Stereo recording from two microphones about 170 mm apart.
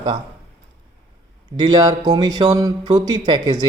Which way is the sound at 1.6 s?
25° right (ahead or behind).